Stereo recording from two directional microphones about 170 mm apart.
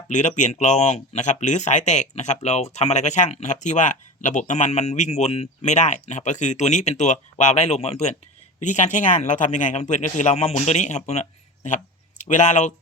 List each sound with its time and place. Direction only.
0.1 s speech: 45° left (ahead or behind)